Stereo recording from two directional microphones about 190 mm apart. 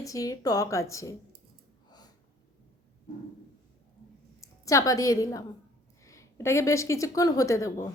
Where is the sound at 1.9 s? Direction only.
20° left (ahead or behind).